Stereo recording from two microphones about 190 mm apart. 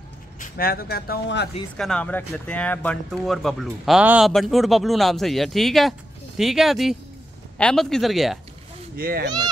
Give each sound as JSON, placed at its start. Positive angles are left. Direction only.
{"t": 0.4, "sound": "speech", "side_deg": 50}
{"t": 1.8, "sound": "speech", "side_deg": 5}
{"t": 8.9, "sound": "speech", "side_deg": -50}